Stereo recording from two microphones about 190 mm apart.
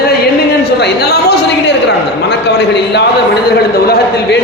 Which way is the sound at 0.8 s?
60° left (ahead or behind).